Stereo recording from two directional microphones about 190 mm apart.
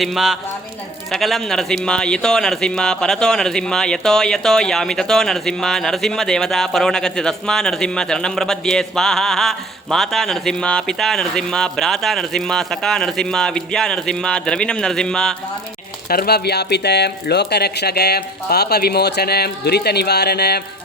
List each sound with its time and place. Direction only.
0.0 s speech: centre (ahead or behind)
16.0 s speech: 55° left (ahead or behind)